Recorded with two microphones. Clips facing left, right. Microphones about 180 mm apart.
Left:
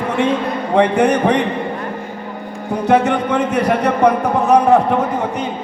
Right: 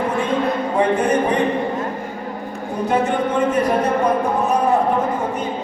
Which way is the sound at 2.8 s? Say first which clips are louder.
Left 4 dB; 70° left (ahead or behind).